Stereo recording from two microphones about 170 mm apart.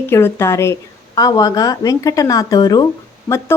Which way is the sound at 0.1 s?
15° left (ahead or behind).